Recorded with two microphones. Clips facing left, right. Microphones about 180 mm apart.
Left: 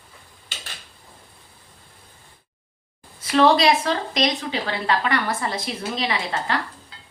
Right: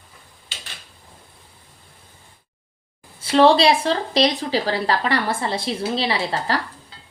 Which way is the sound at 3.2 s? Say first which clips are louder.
Right 2 dB; 30° right (ahead or behind).